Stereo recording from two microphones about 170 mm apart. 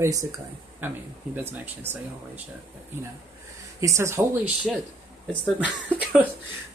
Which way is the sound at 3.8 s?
15° right (ahead or behind).